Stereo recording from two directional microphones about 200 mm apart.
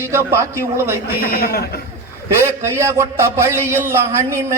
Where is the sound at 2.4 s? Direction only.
15° right (ahead or behind).